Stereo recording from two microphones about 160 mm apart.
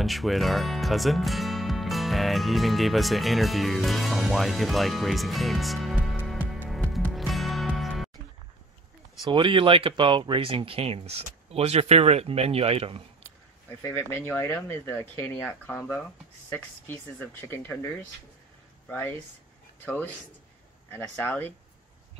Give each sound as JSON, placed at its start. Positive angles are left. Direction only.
{"t": 0.0, "sound": "speech", "side_deg": 0}
{"t": 6.1, "sound": "music", "side_deg": 0}
{"t": 9.2, "sound": "speech", "side_deg": -30}
{"t": 13.8, "sound": "speech", "side_deg": 15}
{"t": 18.9, "sound": "speech", "side_deg": 10}